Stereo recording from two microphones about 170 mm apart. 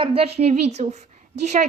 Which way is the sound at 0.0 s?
35° right (ahead or behind).